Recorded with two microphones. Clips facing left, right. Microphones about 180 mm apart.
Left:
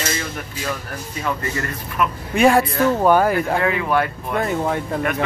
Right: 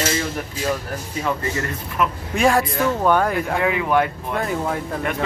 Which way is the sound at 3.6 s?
15° right (ahead or behind).